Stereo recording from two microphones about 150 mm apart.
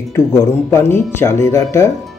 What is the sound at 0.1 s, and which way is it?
Speech, 20° left (ahead or behind).